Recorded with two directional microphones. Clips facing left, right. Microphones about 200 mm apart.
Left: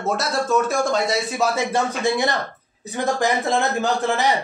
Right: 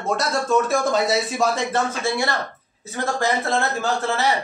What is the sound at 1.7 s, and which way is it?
A man's voice, 20° left (ahead or behind).